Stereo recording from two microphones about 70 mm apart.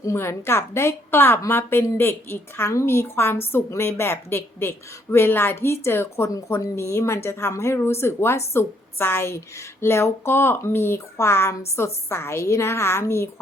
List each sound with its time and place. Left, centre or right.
0.0 s a woman's voice: left